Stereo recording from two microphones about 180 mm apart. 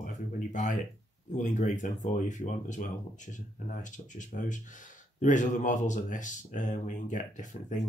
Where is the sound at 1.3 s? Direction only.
40° left (ahead or behind).